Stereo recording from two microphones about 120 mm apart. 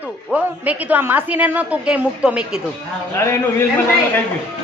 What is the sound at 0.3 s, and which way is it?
A woman's voice, 10° right (ahead or behind).